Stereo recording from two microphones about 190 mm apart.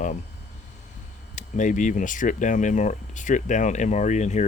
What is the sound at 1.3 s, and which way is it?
A man's voice, 40° left (ahead or behind).